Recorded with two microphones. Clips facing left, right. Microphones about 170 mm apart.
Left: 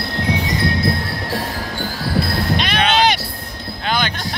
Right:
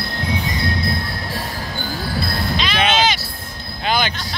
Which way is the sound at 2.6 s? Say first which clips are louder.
Even; 60° left (ahead or behind).